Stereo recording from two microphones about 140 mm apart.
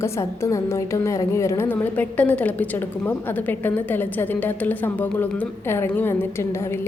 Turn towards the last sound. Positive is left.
turn(degrees=15)  # may be behind; listen again after turning